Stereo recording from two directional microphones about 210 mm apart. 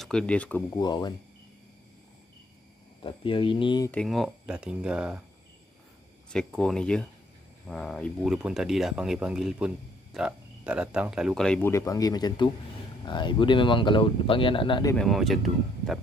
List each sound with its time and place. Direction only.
0.0 s speech: 5° left (ahead or behind)
0.7 s speech: 20° left (ahead or behind)
3.0 s speech: 25° left (ahead or behind)
3.9 s speech: centre (ahead or behind)
6.3 s speech: 5° left (ahead or behind); by 15.0 s 20° left (ahead or behind)
15.0 s speech: centre (ahead or behind)